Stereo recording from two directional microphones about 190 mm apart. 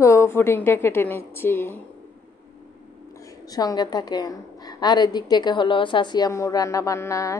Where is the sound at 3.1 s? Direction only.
15° left (ahead or behind).